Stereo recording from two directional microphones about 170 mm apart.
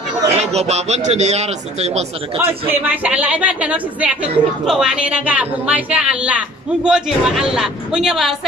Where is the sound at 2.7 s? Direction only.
10° right (ahead or behind).